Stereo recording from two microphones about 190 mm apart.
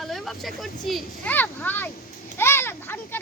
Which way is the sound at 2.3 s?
10° left (ahead or behind).